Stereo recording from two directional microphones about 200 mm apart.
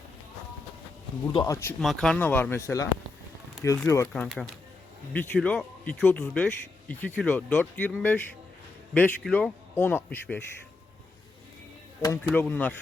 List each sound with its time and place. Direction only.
1.3 s speech: 20° left (ahead or behind)
1.8 s speech: centre (ahead or behind)
4.1 s speech: 5° left (ahead or behind)
12.0 s speech: 10° left (ahead or behind)